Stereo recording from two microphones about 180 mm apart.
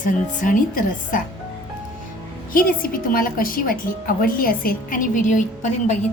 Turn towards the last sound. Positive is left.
turn(degrees=40)  # may be behind; listen again after turning